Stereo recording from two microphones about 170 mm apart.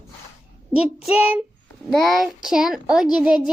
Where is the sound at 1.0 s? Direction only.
5° right (ahead or behind).